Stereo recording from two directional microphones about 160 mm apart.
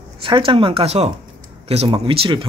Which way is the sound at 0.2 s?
35° right (ahead or behind).